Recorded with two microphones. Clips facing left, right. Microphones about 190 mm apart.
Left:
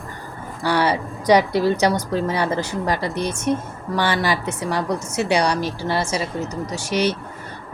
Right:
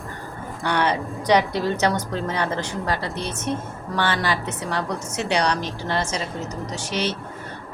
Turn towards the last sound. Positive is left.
turn(degrees=10)  # may be behind; listen again after turning